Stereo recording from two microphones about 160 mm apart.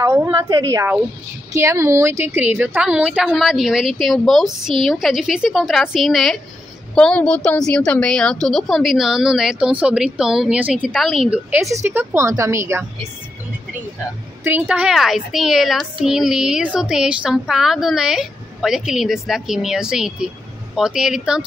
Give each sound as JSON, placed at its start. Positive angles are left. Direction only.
{"t": 0.0, "sound": "a woman's voice", "side_deg": -15}
{"t": 14.4, "sound": "a woman's voice", "side_deg": -10}